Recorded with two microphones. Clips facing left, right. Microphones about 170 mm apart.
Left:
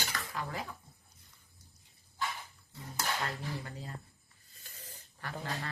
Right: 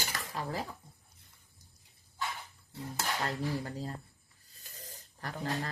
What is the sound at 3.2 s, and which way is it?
A man's voice, 35° right (ahead or behind).